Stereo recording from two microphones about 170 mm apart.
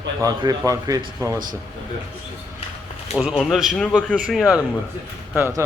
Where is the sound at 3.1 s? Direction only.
Centre (ahead or behind).